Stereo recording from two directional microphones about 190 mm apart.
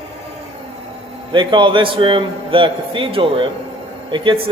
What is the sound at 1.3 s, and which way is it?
A man's voice, 25° right (ahead or behind).